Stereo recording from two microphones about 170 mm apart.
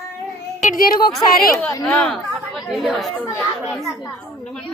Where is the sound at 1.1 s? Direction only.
Centre (ahead or behind).